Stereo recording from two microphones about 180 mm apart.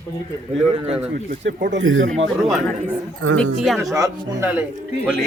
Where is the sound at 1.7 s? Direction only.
90° right.